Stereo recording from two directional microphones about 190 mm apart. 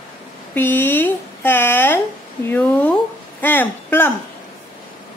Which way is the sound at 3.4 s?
10° left (ahead or behind).